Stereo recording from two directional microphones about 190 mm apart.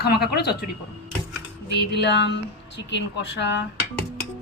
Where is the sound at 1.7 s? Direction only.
65° left (ahead or behind).